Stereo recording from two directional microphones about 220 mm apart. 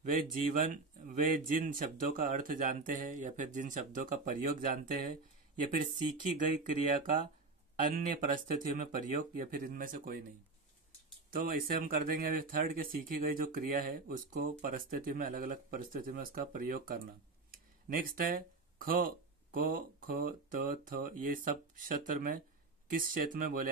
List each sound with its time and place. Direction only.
0.2 s speech: 35° right (ahead or behind)
6.3 s speech: 35° right (ahead or behind)
11.2 s speech: 40° right (ahead or behind)